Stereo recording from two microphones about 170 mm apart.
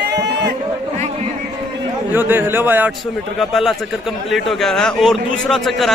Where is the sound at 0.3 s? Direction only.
80° right.